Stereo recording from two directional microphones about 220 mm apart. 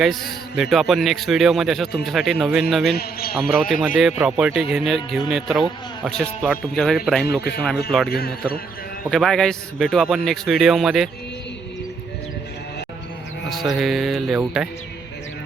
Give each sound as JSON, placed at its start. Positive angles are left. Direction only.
{"t": 0.0, "sound": "a man's voice", "side_deg": 0}
{"t": 2.9, "sound": "a man's voice", "side_deg": 45}
{"t": 3.3, "sound": "a man's voice", "side_deg": 0}
{"t": 8.1, "sound": "a man's voice", "side_deg": 45}
{"t": 9.0, "sound": "a man's voice", "side_deg": 0}
{"t": 13.5, "sound": "a man's voice", "side_deg": 0}